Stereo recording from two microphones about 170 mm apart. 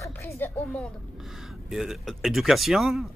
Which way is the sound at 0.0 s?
15° left (ahead or behind).